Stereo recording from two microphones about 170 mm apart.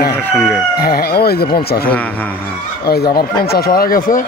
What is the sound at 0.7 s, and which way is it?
Speech, 65° left (ahead or behind).